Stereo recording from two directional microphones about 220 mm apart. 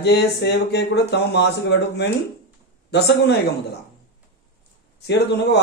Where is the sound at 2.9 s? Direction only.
50° left (ahead or behind).